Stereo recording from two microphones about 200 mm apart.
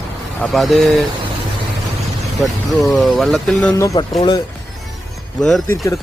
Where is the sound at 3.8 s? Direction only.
15° left (ahead or behind).